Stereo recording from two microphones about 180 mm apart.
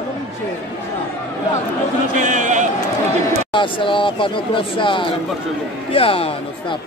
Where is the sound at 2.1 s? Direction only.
45° right (ahead or behind).